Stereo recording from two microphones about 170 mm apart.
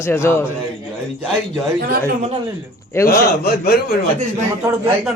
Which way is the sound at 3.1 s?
65° left (ahead or behind).